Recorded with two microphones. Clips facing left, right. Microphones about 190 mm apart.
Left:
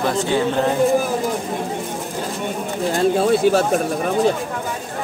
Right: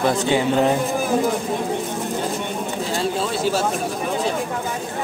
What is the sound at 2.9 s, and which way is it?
Speech, 55° left (ahead or behind).